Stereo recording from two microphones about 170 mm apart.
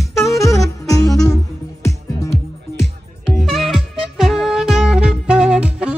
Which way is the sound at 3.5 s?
Centre (ahead or behind).